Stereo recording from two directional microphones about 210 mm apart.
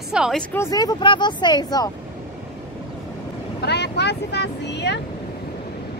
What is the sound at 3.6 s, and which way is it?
Speech, 50° left (ahead or behind).